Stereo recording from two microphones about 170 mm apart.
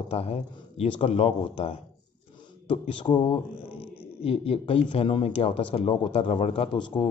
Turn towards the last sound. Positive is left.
turn(degrees=30)  # may be behind; listen again after turning